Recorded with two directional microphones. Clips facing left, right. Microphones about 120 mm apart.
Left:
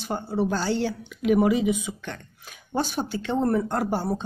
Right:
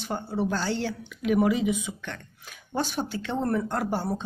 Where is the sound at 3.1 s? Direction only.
15° left (ahead or behind).